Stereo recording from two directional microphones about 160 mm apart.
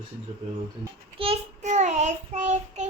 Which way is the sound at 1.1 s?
35° right (ahead or behind).